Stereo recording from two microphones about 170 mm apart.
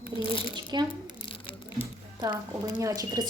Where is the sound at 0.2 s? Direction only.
30° left (ahead or behind).